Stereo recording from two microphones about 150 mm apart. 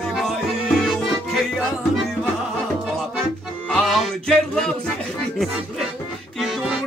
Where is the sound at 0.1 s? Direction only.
Centre (ahead or behind).